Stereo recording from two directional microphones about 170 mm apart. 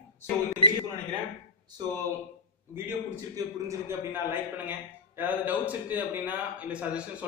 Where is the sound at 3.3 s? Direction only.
15° right (ahead or behind).